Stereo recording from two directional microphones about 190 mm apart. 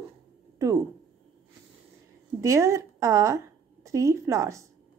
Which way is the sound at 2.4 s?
15° right (ahead or behind).